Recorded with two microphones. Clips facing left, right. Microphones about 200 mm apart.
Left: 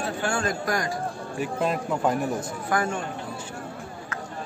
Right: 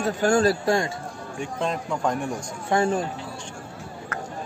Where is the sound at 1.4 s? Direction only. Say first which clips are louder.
Left 2 dB; 5° left (ahead or behind).